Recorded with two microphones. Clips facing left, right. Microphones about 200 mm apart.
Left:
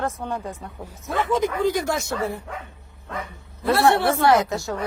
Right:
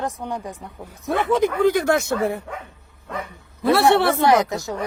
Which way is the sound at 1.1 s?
60° right (ahead or behind).